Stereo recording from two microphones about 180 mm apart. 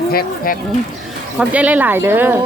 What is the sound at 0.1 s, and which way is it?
Speech, 55° left (ahead or behind).